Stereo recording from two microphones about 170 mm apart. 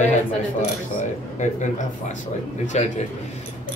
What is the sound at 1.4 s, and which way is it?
A man's voice, 45° left (ahead or behind).